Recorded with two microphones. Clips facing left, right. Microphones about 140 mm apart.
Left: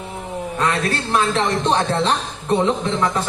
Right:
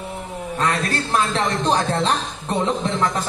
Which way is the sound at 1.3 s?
30° left (ahead or behind).